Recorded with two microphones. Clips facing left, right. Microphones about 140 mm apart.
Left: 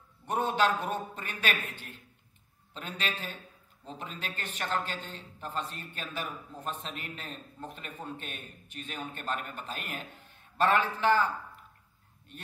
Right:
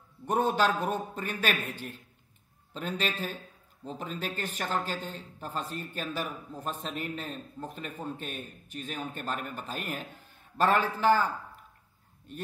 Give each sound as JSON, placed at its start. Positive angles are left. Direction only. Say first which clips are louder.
{"t": 0.3, "sound": "a man's voice", "louder": "right 2 dB", "side_deg": -40}